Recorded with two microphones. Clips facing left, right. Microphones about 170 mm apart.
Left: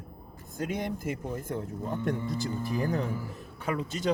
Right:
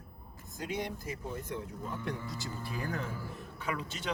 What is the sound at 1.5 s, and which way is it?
Speech, 50° left (ahead or behind).